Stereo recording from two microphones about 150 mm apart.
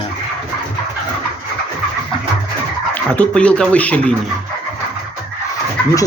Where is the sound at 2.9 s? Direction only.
10° left (ahead or behind).